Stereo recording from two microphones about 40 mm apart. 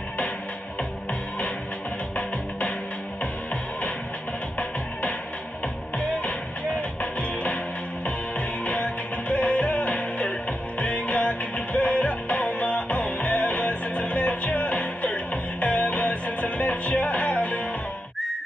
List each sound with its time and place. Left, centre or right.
7.0 s music: left